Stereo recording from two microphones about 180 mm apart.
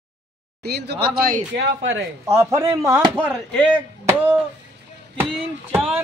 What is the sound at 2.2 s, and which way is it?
Speech, 15° right (ahead or behind).